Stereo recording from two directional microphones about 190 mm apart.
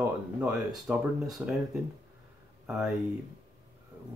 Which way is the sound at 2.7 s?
Centre (ahead or behind).